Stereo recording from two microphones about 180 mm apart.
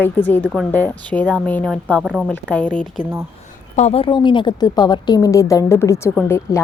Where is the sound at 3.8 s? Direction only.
35° left (ahead or behind); by 6.6 s 15° left (ahead or behind).